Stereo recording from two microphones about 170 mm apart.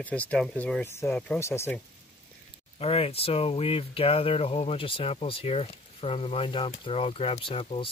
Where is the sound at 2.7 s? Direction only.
35° left (ahead or behind).